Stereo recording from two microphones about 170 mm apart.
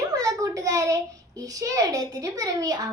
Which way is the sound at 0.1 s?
20° right (ahead or behind).